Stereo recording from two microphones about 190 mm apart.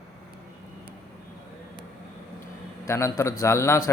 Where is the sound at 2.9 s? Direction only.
15° left (ahead or behind).